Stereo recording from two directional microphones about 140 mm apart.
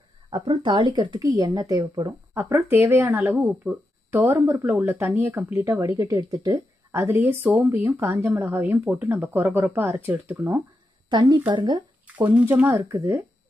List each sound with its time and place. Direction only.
0.3 s speech: 35° right (ahead or behind)
2.3 s speech: 20° right (ahead or behind)
11.1 s speech: 30° right (ahead or behind)
12.3 s speech: 10° right (ahead or behind)